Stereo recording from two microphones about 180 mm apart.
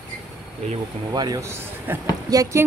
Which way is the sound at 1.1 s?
20° right (ahead or behind).